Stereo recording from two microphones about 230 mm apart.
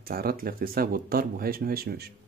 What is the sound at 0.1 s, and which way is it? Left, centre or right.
Speech, right.